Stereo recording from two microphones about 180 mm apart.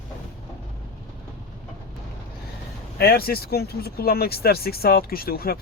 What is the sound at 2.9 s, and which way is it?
Speech, 60° left (ahead or behind).